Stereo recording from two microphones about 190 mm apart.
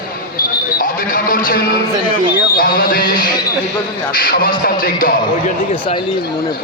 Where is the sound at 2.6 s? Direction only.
50° left (ahead or behind).